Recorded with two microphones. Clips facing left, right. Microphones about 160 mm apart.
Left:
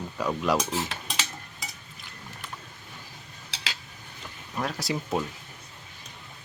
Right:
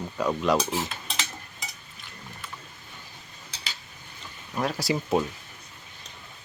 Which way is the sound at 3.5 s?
90° left.